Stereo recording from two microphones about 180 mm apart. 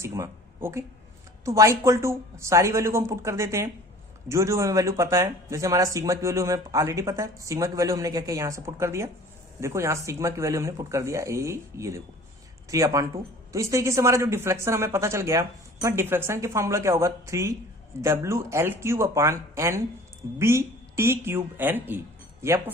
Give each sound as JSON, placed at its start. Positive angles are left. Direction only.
{"t": 0.0, "sound": "speech", "side_deg": -15}